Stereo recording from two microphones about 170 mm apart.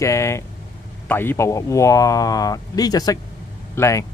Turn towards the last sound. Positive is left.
turn(degrees=15)  # may be behind; listen again after turning